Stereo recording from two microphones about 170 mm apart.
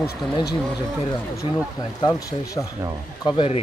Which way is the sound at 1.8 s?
25° left (ahead or behind).